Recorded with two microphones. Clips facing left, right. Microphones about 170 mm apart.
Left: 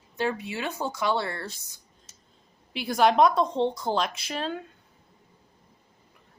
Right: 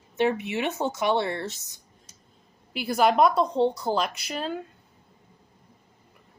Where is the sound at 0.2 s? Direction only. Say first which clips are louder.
Right 4 dB; 20° right (ahead or behind).